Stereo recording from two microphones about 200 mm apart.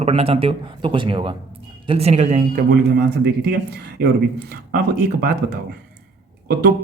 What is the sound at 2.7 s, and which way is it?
Speech, 50° right (ahead or behind).